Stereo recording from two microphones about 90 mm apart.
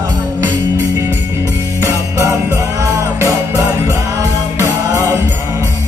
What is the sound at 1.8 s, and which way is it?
Music, 30° right (ahead or behind).